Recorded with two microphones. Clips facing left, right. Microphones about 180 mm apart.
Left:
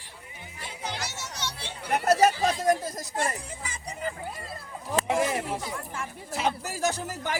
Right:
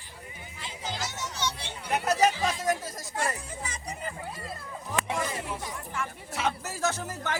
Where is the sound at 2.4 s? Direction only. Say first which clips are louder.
Left 4 dB; 35° left (ahead or behind).